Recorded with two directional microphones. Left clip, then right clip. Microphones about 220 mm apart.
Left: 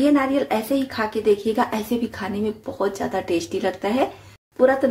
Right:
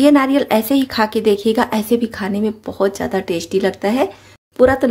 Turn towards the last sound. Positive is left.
turn(degrees=-45)  # may be behind; listen again after turning